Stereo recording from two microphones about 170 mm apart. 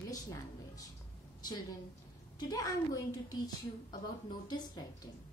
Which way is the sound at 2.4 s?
25° left (ahead or behind).